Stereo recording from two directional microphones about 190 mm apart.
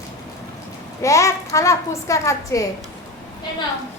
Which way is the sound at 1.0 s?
15° left (ahead or behind).